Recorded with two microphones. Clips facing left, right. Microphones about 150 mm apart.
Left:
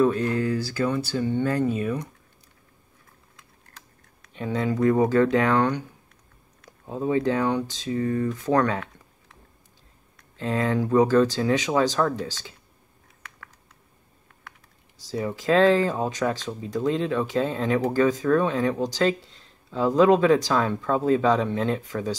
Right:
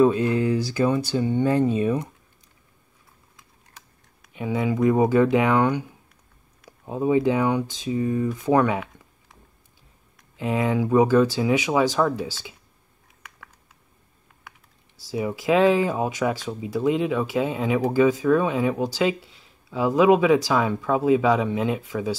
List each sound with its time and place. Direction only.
0.0 s speech: 15° right (ahead or behind)
3.3 s typing: 10° right (ahead or behind)
6.9 s speech: 15° right (ahead or behind)
10.1 s speech: 15° right (ahead or behind)
15.0 s speech: 10° right (ahead or behind)